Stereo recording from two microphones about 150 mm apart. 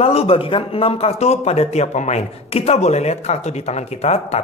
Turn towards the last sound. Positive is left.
turn(degrees=45)  # may be behind; listen again after turning